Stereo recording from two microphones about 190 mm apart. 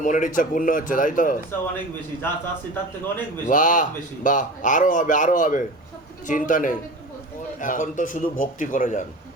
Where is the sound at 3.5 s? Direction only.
45° left (ahead or behind).